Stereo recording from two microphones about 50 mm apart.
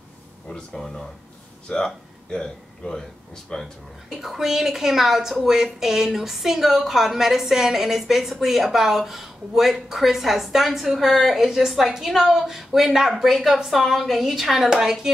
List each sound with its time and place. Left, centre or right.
0.5 s speech: centre
4.1 s a woman's voice: centre